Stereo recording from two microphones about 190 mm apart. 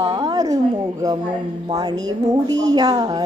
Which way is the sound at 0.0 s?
20° right (ahead or behind).